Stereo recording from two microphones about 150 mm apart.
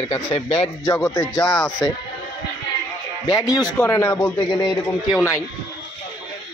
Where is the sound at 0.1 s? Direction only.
40° left (ahead or behind).